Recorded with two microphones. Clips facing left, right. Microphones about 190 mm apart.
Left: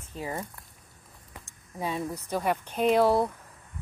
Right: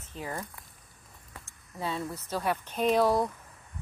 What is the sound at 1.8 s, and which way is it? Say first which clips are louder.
Speech: left 2 dB; 15° left (ahead or behind).